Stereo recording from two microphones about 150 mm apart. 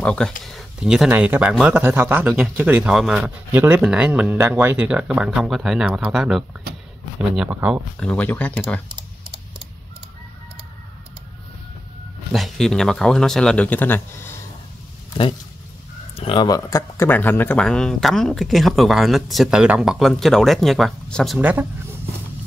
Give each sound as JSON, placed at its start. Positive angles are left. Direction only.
{"t": 0.0, "sound": "speech", "side_deg": 5}
{"t": 8.0, "sound": "speech", "side_deg": 10}
{"t": 12.3, "sound": "speech", "side_deg": 0}
{"t": 16.2, "sound": "speech", "side_deg": 35}
{"t": 16.4, "sound": "speech", "side_deg": 20}
{"t": 21.4, "sound": "speech", "side_deg": -10}